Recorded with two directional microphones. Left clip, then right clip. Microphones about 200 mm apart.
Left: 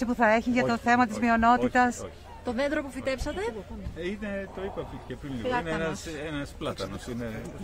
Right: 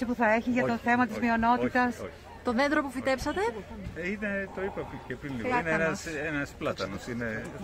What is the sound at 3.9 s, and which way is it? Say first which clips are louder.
Speech: right 2 dB; 10° left (ahead or behind).